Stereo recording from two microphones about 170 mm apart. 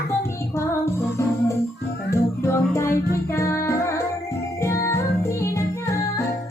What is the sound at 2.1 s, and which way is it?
Music, 15° left (ahead or behind).